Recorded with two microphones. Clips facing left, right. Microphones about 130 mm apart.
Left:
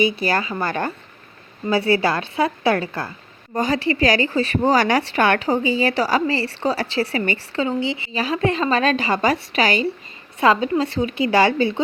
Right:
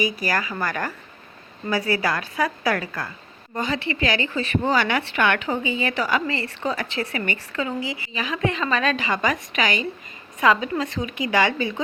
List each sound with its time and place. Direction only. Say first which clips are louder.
0.0 s a woman's voice: left 4 dB; 30° left (ahead or behind)